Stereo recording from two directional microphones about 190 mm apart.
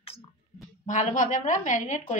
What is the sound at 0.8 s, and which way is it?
A woman's voice, 40° left (ahead or behind).